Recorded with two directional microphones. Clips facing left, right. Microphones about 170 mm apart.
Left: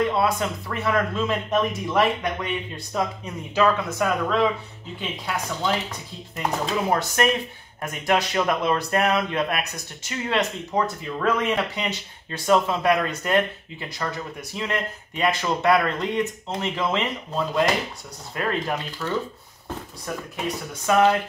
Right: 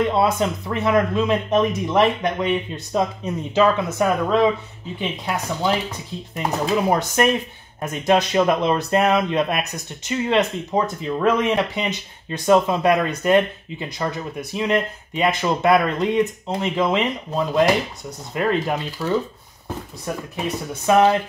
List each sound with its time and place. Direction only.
0.1 s speech: 25° right (ahead or behind)
20.8 s speech: 20° right (ahead or behind)